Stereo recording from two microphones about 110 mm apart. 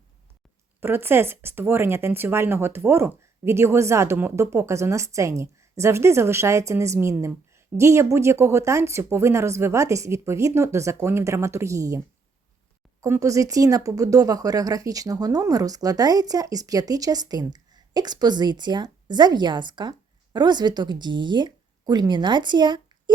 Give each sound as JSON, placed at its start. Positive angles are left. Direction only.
{"t": 0.8, "sound": "speech", "side_deg": -20}
{"t": 13.0, "sound": "speech", "side_deg": -30}